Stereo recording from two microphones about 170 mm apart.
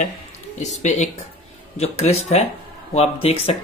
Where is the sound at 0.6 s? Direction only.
45° left (ahead or behind).